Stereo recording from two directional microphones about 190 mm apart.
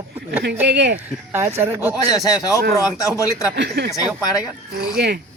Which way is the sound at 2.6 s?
55° right (ahead or behind).